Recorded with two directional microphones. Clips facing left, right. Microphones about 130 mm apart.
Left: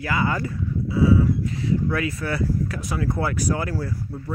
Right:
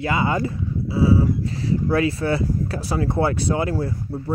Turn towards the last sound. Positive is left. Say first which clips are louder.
# right 4 dB
turn(degrees=-30)  # may be behind; listen again after turning